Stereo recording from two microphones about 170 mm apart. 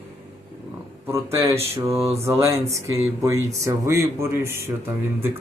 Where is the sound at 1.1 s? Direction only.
15° right (ahead or behind).